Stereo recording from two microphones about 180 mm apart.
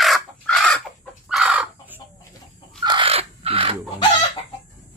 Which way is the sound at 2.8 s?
25° right (ahead or behind).